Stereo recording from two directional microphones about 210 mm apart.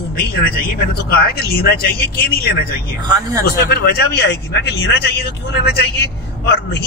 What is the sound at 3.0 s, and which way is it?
Speech, 15° right (ahead or behind).